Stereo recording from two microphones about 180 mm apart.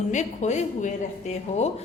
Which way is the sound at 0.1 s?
40° left (ahead or behind).